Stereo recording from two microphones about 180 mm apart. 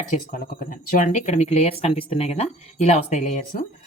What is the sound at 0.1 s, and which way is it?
Speech, 50° left (ahead or behind).